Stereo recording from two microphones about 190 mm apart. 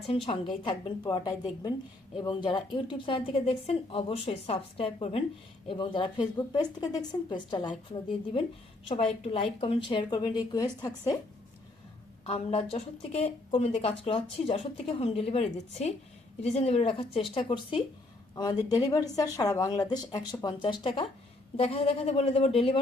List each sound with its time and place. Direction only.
0.0 s speech: 30° left (ahead or behind)
8.9 s speech: 30° left (ahead or behind)
12.2 s speech: 35° left (ahead or behind)